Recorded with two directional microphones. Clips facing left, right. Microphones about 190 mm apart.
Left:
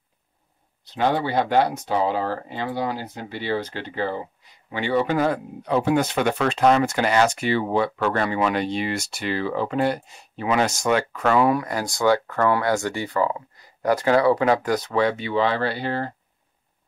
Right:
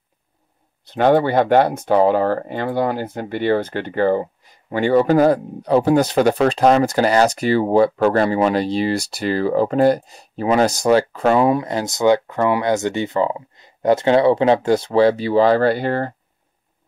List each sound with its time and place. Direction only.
0.8 s speech: 55° right (ahead or behind)